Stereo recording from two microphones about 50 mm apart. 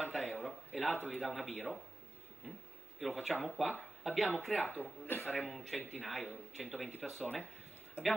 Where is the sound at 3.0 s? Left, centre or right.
Centre.